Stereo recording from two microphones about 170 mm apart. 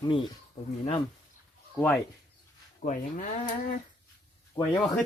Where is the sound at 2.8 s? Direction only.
50° left (ahead or behind).